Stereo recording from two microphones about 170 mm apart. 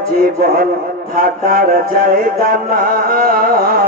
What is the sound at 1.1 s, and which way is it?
A man's voice, 55° right (ahead or behind).